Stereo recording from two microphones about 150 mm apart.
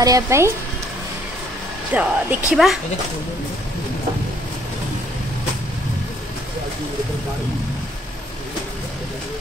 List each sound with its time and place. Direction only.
0.0 s speech: 20° right (ahead or behind)
1.9 s speech: 10° right (ahead or behind)